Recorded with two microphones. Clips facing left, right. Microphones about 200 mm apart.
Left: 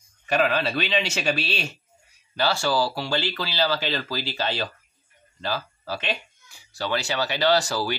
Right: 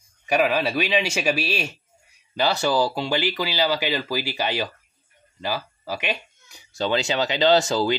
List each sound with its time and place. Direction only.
0.3 s speech: 10° right (ahead or behind)